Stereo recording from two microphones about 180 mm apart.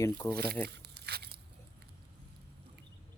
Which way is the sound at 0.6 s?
65° right (ahead or behind).